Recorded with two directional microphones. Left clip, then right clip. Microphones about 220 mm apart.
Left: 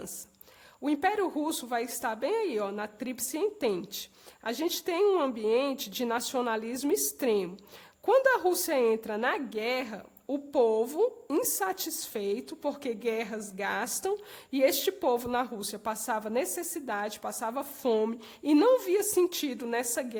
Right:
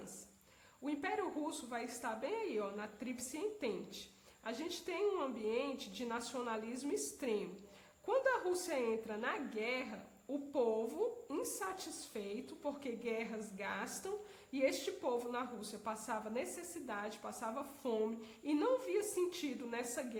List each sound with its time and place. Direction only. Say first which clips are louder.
0.9 s a woman's voice: left 12 dB; 45° left (ahead or behind)